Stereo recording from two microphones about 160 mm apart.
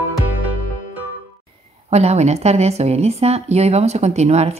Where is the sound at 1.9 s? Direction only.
40° right (ahead or behind).